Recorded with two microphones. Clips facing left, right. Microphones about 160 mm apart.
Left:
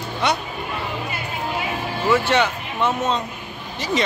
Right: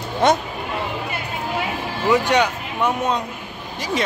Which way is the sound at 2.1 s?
15° right (ahead or behind).